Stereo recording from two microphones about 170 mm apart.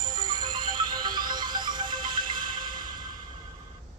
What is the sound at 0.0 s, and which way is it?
Music, 25° right (ahead or behind).